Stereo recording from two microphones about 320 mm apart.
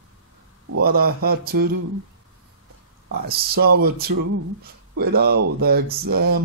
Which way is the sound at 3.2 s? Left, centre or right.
Right.